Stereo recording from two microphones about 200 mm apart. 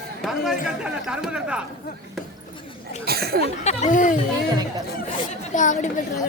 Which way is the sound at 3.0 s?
50° right (ahead or behind).